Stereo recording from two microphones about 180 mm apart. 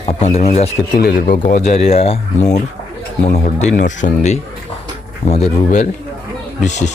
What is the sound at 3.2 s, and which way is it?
Speech, 45° left (ahead or behind).